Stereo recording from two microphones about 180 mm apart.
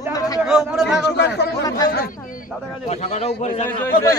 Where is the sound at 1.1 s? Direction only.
70° left (ahead or behind).